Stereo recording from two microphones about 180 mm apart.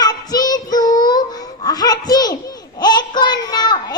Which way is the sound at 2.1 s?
20° left (ahead or behind).